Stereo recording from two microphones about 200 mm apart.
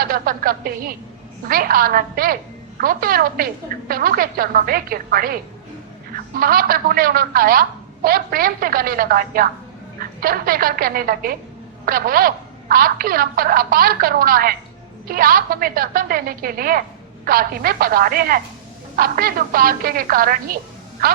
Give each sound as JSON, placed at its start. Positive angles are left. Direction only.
{"t": 0.0, "sound": "a woman's voice", "side_deg": -45}